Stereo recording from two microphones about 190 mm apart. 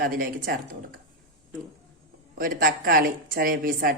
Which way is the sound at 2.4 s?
45° right (ahead or behind).